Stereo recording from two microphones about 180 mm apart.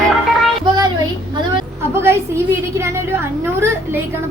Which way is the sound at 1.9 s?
15° right (ahead or behind).